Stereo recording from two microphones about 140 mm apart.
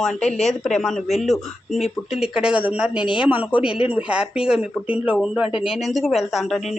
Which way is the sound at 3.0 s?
35° left (ahead or behind).